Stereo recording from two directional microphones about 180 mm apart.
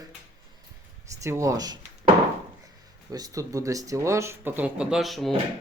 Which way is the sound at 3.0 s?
20° right (ahead or behind).